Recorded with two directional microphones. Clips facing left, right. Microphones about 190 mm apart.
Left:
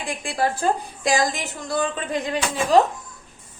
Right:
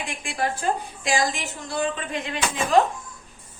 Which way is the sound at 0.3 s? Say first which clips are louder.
Left 3 dB; 35° left (ahead or behind).